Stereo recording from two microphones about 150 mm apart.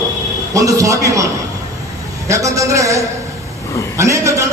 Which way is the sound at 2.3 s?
20° right (ahead or behind).